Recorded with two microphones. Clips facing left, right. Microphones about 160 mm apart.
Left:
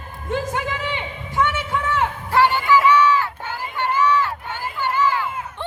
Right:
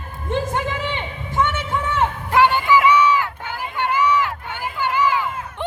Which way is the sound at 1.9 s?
15° right (ahead or behind).